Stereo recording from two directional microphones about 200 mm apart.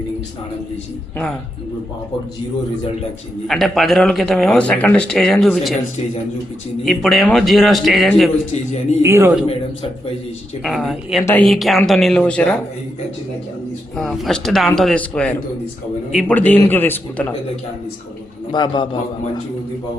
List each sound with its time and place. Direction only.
3.4 s speech: centre (ahead or behind)
6.8 s speech: centre (ahead or behind)
9.0 s speech: 10° right (ahead or behind)
10.6 s speech: centre (ahead or behind)
13.9 s a man's voice: centre (ahead or behind)
18.5 s a man's voice: 20° left (ahead or behind)